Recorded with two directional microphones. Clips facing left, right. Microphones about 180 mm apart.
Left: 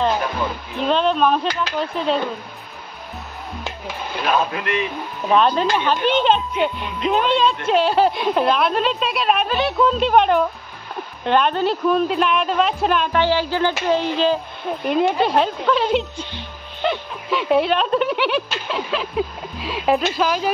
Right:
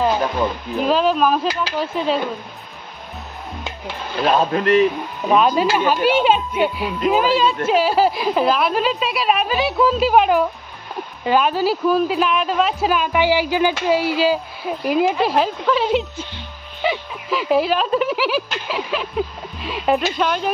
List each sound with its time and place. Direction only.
0.7 s speech: 5° right (ahead or behind)
4.3 s a man's voice: 35° right (ahead or behind)
5.3 s a child's voice: 5° right (ahead or behind)